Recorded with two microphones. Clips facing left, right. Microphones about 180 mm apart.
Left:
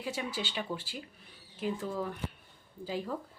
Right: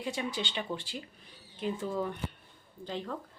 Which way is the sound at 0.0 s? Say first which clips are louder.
Right 2 dB; 5° left (ahead or behind).